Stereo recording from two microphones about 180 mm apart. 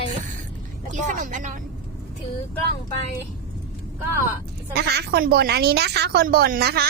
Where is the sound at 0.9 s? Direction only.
45° right (ahead or behind).